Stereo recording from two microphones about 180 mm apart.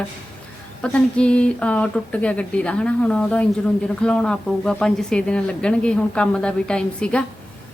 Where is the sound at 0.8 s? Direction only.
5° left (ahead or behind).